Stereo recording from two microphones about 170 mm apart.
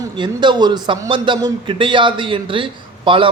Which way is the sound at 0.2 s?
25° right (ahead or behind).